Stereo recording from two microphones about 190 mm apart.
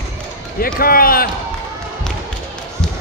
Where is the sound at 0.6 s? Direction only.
50° left (ahead or behind).